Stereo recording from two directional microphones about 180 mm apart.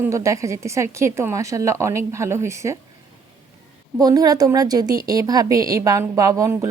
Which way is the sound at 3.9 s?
20° right (ahead or behind).